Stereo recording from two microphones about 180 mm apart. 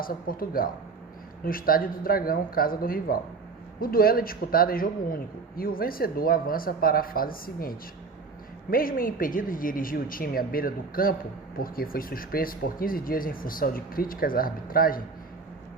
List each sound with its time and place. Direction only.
0.0 s a man's voice: 55° left (ahead or behind)